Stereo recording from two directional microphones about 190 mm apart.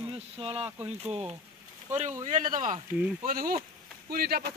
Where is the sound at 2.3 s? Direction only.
40° right (ahead or behind).